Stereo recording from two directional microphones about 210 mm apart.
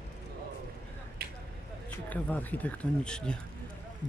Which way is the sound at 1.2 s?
50° right (ahead or behind).